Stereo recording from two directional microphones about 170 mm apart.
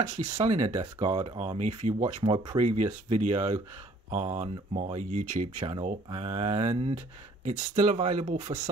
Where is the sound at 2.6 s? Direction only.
45° right (ahead or behind).